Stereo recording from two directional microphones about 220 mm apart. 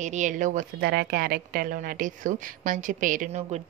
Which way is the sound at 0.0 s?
35° right (ahead or behind).